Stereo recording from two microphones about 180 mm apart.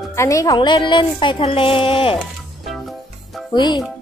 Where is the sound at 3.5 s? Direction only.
25° left (ahead or behind).